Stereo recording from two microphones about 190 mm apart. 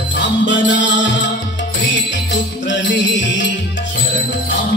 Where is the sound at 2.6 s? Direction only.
75° left (ahead or behind).